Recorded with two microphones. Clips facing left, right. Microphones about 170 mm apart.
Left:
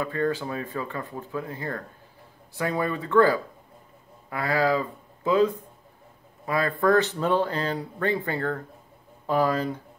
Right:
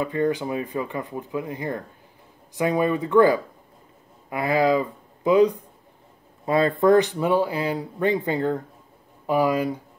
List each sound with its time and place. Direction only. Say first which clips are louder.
0.0 s speech: right 3 dB; 20° right (ahead or behind)